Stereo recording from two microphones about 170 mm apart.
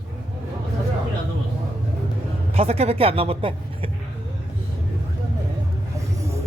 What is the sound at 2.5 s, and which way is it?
Speech, 35° right (ahead or behind).